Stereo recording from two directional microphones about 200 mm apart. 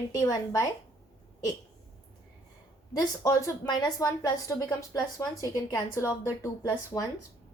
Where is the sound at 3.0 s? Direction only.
15° left (ahead or behind).